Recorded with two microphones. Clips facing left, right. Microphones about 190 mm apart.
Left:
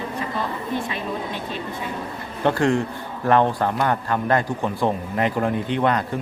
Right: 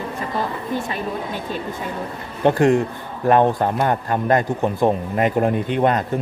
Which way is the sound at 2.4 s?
15° right (ahead or behind).